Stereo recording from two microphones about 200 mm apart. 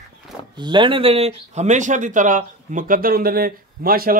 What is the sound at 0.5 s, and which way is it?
Speech, 25° right (ahead or behind).